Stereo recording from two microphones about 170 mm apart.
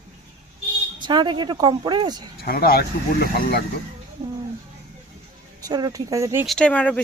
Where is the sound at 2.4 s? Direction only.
65° left (ahead or behind).